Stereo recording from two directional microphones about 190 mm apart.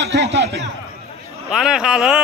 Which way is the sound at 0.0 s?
65° right (ahead or behind).